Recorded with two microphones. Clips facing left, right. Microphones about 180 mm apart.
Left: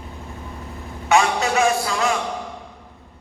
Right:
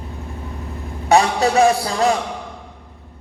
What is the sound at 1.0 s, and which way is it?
A man's voice, 35° right (ahead or behind).